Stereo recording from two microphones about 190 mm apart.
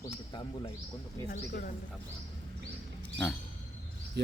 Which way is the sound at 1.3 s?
50° left (ahead or behind).